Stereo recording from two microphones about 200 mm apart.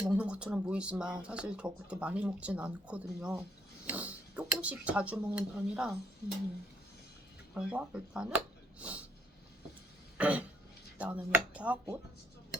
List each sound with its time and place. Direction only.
0.0 s speech: 5° right (ahead or behind)
7.5 s speech: 5° right (ahead or behind)
8.8 s a sound: 5° right (ahead or behind)
10.2 s throat clearing: 5° right (ahead or behind)
10.9 s speech: 5° right (ahead or behind)